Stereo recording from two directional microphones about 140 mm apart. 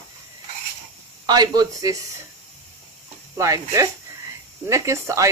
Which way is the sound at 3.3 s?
20° right (ahead or behind).